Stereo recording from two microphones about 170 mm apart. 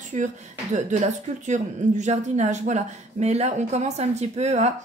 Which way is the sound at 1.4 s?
45° right (ahead or behind).